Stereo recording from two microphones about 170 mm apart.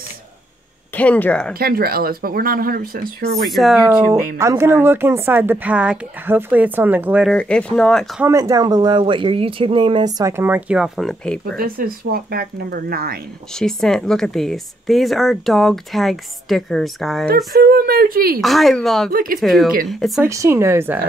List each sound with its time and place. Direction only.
0.9 s speech: 10° left (ahead or behind)
1.5 s speech: 60° right (ahead or behind)
3.4 s speech: centre (ahead or behind)
7.3 s speech: 5° left (ahead or behind)
8.2 s speech: 20° right (ahead or behind); by 11.4 s 5° left (ahead or behind)
11.5 s speech: 60° right (ahead or behind)
13.5 s speech: 5° left (ahead or behind)
17.6 s speech: 60° right (ahead or behind)
18.4 s speech: centre (ahead or behind)
19.0 s speech: 60° right (ahead or behind)
19.4 s speech: centre (ahead or behind)
20.2 s speech: 15° right (ahead or behind)